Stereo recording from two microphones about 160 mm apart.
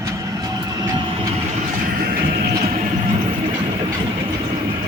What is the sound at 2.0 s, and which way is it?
Music, 75° right (ahead or behind).